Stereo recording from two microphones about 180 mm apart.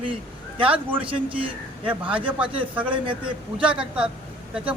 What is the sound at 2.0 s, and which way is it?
Speech, 30° right (ahead or behind).